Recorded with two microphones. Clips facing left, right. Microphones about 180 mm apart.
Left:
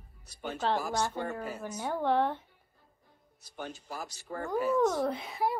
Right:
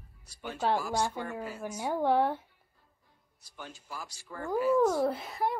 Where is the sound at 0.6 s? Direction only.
10° right (ahead or behind).